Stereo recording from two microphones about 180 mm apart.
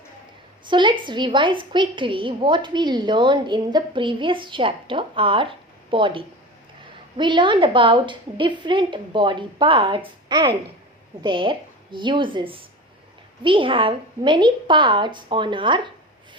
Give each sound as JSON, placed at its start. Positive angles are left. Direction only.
{"t": 0.6, "sound": "a woman's voice", "side_deg": -25}